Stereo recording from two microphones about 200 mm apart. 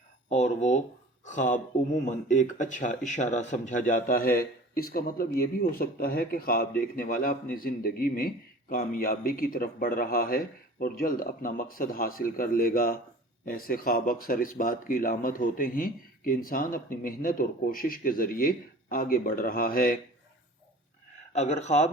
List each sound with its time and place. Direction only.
0.3 s speech: 35° left (ahead or behind)
21.3 s speech: 35° left (ahead or behind)